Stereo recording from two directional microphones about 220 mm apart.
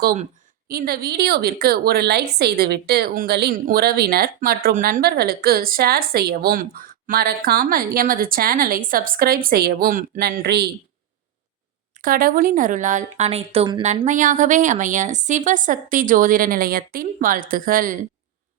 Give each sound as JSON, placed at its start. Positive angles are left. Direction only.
{"t": 0.0, "sound": "a woman's voice", "side_deg": -40}
{"t": 12.0, "sound": "speech", "side_deg": -40}